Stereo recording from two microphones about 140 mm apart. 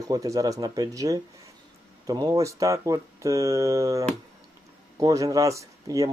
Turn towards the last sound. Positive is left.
turn(degrees=-25)  # may be behind; listen again after turning